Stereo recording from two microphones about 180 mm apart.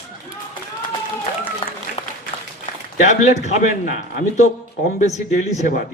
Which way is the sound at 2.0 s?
30° left (ahead or behind).